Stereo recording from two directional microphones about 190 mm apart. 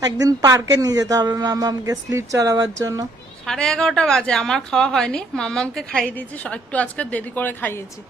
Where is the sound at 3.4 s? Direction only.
5° left (ahead or behind).